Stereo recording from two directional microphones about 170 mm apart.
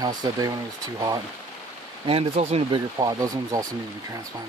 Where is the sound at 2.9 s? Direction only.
20° right (ahead or behind).